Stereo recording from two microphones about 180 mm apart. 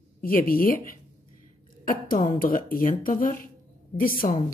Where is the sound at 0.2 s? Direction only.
50° left (ahead or behind).